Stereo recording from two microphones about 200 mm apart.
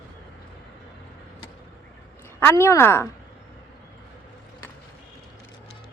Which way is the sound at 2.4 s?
15° left (ahead or behind).